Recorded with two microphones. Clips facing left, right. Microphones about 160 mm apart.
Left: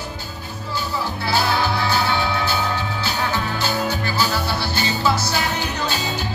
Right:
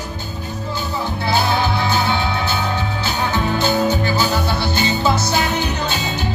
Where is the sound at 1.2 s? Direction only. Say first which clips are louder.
Right 2 dB; 20° right (ahead or behind).